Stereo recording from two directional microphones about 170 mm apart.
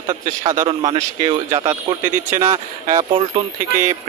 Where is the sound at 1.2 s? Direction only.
20° right (ahead or behind).